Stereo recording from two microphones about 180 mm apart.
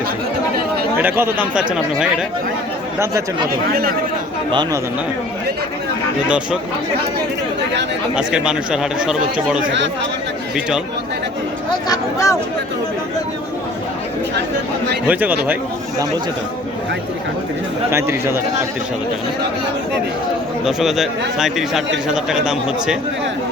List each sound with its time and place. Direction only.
0.9 s speech: 10° right (ahead or behind)
3.5 s speech: 55° right (ahead or behind)
6.2 s speech: 5° right (ahead or behind)
8.1 s speech: 5° right (ahead or behind)
11.9 s speech: 15° left (ahead or behind)
15.0 s speech: 10° right (ahead or behind)
17.9 s speech: 15° right (ahead or behind)
20.7 s speech: centre (ahead or behind)